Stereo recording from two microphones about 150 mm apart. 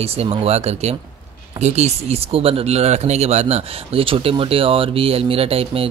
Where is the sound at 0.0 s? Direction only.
40° right (ahead or behind).